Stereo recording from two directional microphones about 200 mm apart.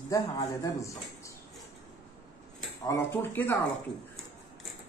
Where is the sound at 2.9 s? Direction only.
10° left (ahead or behind).